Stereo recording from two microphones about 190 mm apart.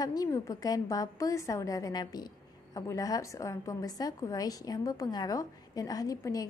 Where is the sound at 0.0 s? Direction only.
20° left (ahead or behind).